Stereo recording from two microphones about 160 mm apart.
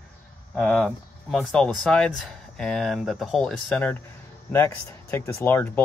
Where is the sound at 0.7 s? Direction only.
5° left (ahead or behind).